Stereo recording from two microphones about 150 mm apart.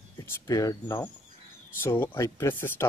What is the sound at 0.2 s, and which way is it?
Speech, 25° left (ahead or behind).